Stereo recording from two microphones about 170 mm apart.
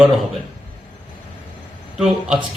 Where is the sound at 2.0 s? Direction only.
Centre (ahead or behind).